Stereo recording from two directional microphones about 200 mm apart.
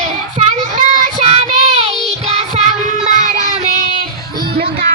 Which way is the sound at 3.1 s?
40° right (ahead or behind).